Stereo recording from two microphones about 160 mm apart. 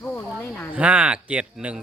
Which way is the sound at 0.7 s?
5° right (ahead or behind).